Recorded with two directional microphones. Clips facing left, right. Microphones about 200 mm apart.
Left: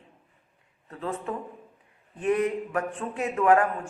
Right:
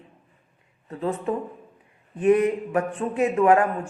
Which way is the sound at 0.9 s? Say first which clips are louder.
Right 6 dB; 20° right (ahead or behind).